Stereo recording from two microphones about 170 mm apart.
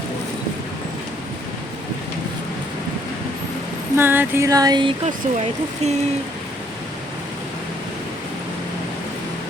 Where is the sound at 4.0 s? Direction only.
15° right (ahead or behind).